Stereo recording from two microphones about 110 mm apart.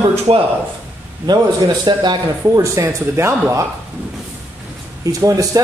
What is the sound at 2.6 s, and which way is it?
Speech, 25° right (ahead or behind).